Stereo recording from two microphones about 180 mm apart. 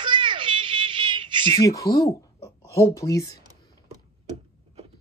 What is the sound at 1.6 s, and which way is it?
Speech, 20° left (ahead or behind).